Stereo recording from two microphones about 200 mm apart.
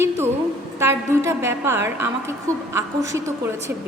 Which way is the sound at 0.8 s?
15° right (ahead or behind).